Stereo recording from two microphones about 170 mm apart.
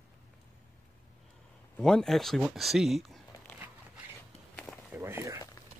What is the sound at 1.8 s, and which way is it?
Speech, 5° left (ahead or behind).